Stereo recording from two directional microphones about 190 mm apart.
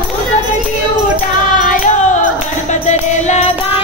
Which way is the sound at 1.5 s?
40° left (ahead or behind).